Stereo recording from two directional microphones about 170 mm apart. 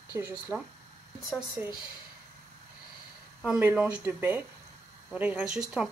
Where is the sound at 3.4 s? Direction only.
10° right (ahead or behind).